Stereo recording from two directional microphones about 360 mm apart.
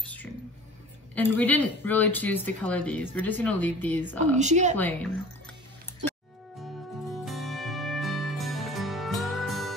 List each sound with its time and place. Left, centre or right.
0.0 s whispering: centre
1.1 s speech: centre
4.4 s speech: centre
7.2 s music: centre